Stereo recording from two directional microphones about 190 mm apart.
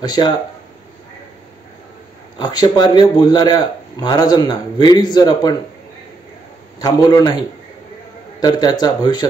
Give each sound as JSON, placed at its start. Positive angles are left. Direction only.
{"t": 0.0, "sound": "speech", "side_deg": 20}
{"t": 2.3, "sound": "speech", "side_deg": 20}
{"t": 6.8, "sound": "speech", "side_deg": 20}